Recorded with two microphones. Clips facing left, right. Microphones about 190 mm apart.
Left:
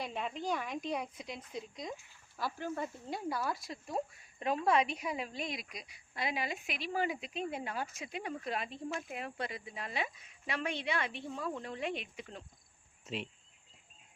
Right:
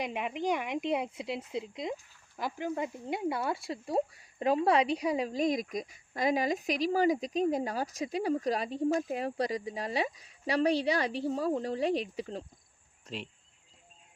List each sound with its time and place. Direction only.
0.0 s speech: 15° right (ahead or behind); by 12.5 s 35° right (ahead or behind)